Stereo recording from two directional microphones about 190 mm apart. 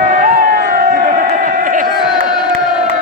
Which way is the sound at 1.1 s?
45° right (ahead or behind).